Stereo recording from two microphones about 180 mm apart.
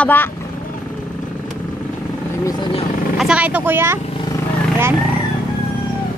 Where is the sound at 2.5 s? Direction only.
25° left (ahead or behind).